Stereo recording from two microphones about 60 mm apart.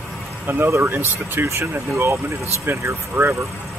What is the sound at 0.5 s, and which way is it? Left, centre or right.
Speech, right.